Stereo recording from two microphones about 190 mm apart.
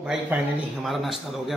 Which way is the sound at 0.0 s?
5° right (ahead or behind).